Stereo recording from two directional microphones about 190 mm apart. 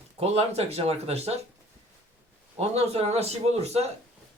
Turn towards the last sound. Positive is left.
turn(degrees=-35)  # may be behind; listen again after turning